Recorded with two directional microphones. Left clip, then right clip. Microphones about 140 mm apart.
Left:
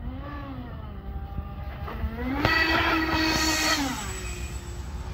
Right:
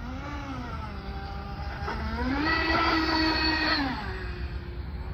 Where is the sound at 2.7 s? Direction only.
Centre (ahead or behind).